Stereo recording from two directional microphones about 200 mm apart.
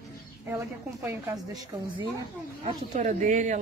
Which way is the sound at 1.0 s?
15° right (ahead or behind).